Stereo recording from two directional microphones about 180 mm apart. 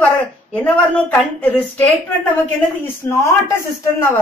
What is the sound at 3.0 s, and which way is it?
Speech, 10° left (ahead or behind).